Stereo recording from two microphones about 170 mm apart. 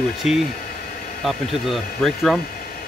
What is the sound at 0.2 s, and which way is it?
Speech, 40° left (ahead or behind).